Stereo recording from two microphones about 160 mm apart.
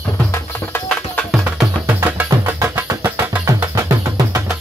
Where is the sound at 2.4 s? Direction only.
20° right (ahead or behind).